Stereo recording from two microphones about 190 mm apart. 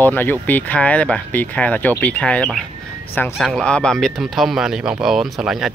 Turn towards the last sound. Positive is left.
turn(degrees=-5)  # may be behind; listen again after turning